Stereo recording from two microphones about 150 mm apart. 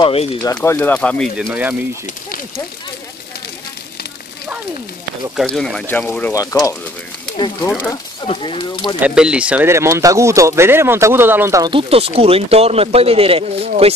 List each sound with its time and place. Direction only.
0.0 s speech: 40° left (ahead or behind)
0.7 s speech: 15° left (ahead or behind)
1.5 s speech: 10° right (ahead or behind)
5.5 s speech: 5° left (ahead or behind)
6.3 s speech: 25° left (ahead or behind)
9.0 s speech: 5° right (ahead or behind)
11.7 s speech: 40° right (ahead or behind)